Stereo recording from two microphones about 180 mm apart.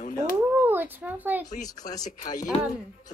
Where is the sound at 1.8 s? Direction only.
20° left (ahead or behind).